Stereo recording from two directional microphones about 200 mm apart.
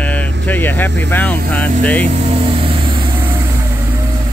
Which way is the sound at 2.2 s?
25° right (ahead or behind).